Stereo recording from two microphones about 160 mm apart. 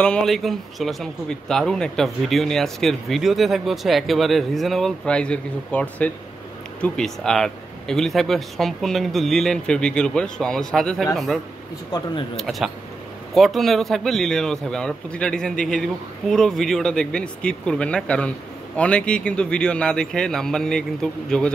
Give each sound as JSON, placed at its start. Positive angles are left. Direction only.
{"t": 0.0, "sound": "a man's voice", "side_deg": 5}
{"t": 11.9, "sound": "speech", "side_deg": 25}
{"t": 12.4, "sound": "a man's voice", "side_deg": 0}